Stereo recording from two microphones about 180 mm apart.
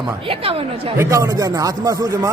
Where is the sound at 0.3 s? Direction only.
30° right (ahead or behind).